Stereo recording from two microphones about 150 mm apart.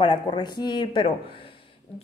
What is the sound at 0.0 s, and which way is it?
Speech, 30° left (ahead or behind).